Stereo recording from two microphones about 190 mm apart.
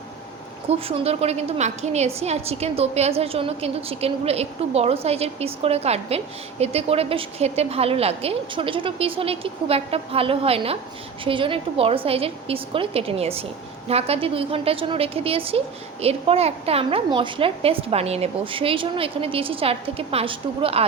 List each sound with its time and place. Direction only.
0.7 s a woman's voice: 30° right (ahead or behind)